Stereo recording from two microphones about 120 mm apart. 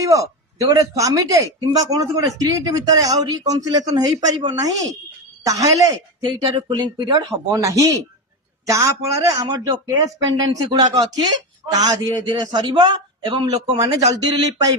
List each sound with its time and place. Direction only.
0.0 s speech: 25° right (ahead or behind)